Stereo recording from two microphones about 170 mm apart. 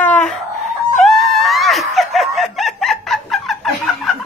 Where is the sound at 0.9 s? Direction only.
Centre (ahead or behind).